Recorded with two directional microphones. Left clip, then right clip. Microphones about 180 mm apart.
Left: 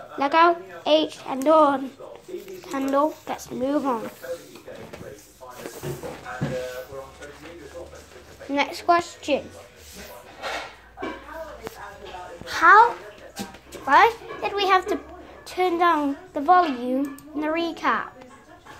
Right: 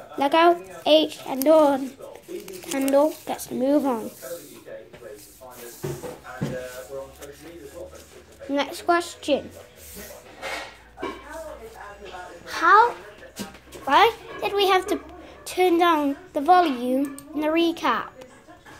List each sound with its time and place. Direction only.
0.2 s a child's voice: 20° right (ahead or behind)
8.5 s a child's voice: 15° right (ahead or behind)
12.4 s a sound: 5° right (ahead or behind)
13.8 s a child's voice: 20° right (ahead or behind)